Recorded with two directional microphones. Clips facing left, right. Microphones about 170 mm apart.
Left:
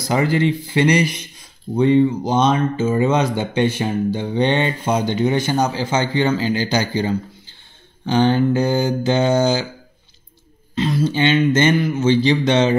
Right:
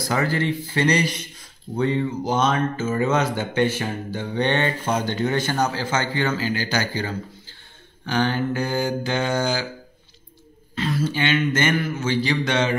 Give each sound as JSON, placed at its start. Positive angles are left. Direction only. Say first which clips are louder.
{"t": 0.0, "sound": "speech", "louder": "left 5 dB", "side_deg": 20}
{"t": 10.7, "sound": "speech", "louder": "left 5 dB", "side_deg": 20}